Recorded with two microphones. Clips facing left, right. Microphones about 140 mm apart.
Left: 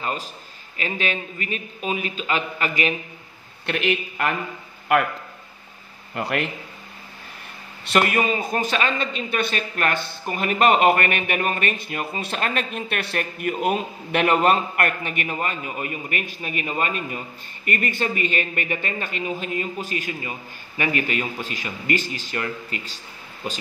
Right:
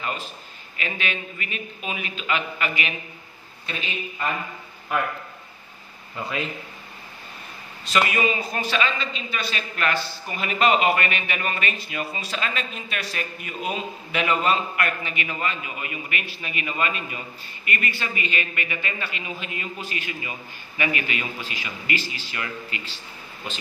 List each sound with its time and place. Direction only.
0.0 s a man's voice: 35° left (ahead or behind)
3.6 s a man's voice: 80° left
6.1 s a man's voice: 70° left (ahead or behind)
7.8 s speech: 55° left (ahead or behind)